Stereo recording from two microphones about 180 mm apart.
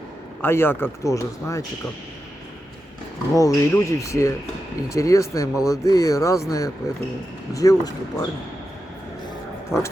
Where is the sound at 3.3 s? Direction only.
20° left (ahead or behind).